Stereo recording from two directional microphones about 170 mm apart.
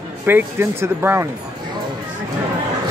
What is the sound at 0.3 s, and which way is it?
Speech, 15° right (ahead or behind).